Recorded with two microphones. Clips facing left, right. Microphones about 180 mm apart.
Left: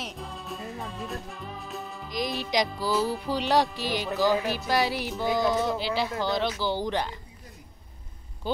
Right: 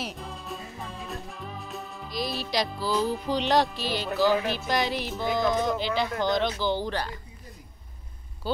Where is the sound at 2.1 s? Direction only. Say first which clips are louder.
Left 1 dB; 15° left (ahead or behind).